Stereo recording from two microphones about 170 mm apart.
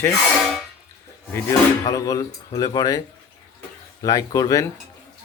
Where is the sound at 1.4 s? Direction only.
20° left (ahead or behind).